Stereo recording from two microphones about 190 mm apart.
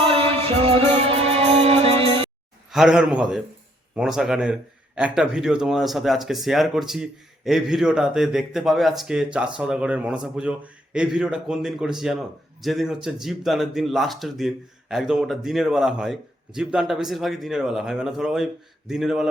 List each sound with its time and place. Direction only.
0.0 s music: 30° right (ahead or behind)
2.6 s speech: centre (ahead or behind)